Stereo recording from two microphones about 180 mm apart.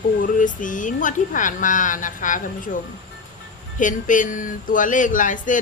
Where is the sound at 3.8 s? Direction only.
45° left (ahead or behind).